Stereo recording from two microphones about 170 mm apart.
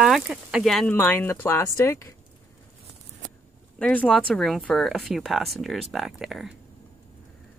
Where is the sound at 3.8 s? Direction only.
10° left (ahead or behind).